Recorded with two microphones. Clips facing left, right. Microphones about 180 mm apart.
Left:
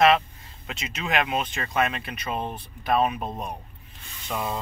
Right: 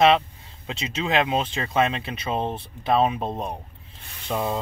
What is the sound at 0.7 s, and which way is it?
Speech, 30° right (ahead or behind).